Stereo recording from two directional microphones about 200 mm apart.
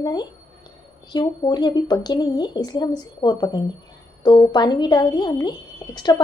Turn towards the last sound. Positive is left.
turn(degrees=20)  # may be behind; listen again after turning